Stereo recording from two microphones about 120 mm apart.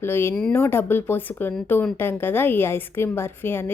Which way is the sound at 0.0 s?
20° left (ahead or behind).